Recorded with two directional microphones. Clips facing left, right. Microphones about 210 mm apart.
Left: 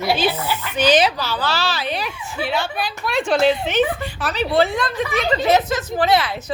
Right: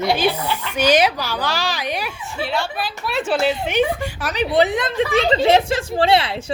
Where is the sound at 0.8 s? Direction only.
10° right (ahead or behind).